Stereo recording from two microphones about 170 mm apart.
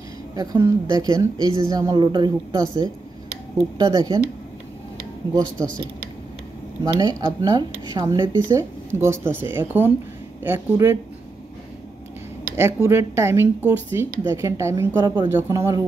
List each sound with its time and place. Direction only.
0.4 s speech: 20° right (ahead or behind)
6.8 s speech: 20° right (ahead or behind)
12.5 s speech: 15° right (ahead or behind)